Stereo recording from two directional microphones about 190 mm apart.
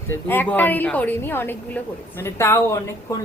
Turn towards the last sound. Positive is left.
turn(degrees=15)  # may be behind; listen again after turning